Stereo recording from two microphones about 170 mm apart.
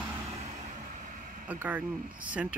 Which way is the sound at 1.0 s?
45° right (ahead or behind).